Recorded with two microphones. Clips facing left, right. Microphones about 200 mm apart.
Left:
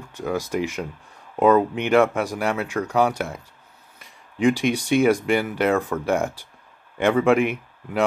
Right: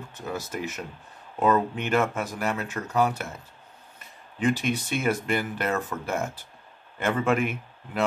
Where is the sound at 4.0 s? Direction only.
10° left (ahead or behind).